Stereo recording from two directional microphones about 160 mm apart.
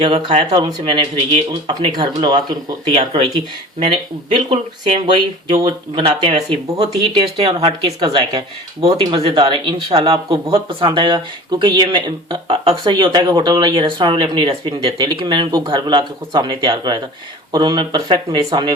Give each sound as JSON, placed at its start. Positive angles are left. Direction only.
{"t": 0.3, "sound": "speech", "side_deg": -40}
{"t": 4.3, "sound": "speech", "side_deg": -30}